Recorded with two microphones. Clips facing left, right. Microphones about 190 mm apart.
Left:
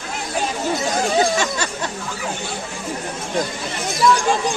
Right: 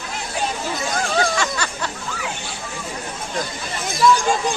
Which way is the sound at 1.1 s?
20° left (ahead or behind).